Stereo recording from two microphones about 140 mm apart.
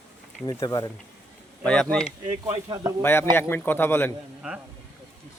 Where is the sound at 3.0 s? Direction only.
15° left (ahead or behind).